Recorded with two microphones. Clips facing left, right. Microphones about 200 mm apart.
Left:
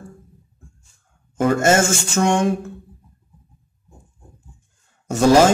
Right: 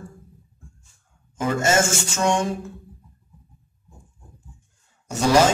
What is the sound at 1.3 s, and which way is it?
Speech, 55° left (ahead or behind).